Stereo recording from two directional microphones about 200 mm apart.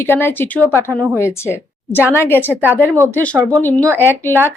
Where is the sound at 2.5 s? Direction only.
10° right (ahead or behind).